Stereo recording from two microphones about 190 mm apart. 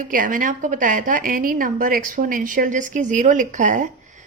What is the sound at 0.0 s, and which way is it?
A woman's voice, 45° right (ahead or behind).